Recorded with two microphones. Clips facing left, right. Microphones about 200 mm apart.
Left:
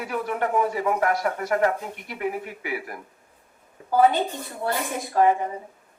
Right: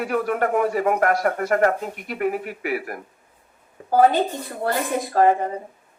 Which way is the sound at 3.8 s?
45° right (ahead or behind).